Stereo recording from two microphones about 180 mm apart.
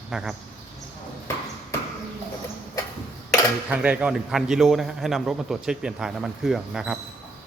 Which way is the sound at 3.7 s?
10° right (ahead or behind).